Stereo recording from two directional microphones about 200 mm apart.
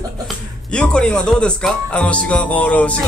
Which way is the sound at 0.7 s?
5° left (ahead or behind).